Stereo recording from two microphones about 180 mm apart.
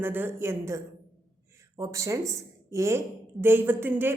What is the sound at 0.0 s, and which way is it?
A woman's voice, 10° right (ahead or behind).